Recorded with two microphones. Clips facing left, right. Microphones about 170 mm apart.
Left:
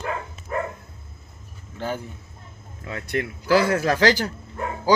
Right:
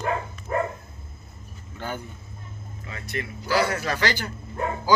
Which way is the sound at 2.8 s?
60° left (ahead or behind).